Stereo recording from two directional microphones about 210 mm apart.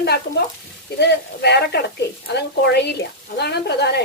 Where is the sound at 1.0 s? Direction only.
55° left (ahead or behind).